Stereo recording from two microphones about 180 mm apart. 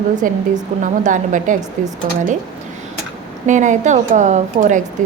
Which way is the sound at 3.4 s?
45° right (ahead or behind).